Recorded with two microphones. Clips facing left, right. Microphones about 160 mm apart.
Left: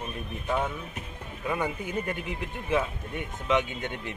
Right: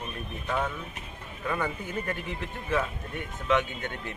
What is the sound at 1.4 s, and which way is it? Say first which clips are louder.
Speech: left 1 dB; 15° left (ahead or behind).